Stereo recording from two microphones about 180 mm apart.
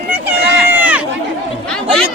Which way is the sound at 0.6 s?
10° right (ahead or behind).